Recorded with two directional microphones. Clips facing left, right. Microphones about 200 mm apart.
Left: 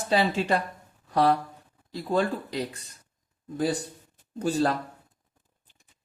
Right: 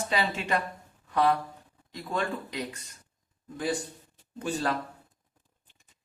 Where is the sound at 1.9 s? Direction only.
35° left (ahead or behind).